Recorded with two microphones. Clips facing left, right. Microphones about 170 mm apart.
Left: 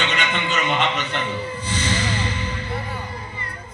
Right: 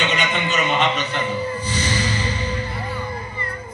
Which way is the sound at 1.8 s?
20° left (ahead or behind).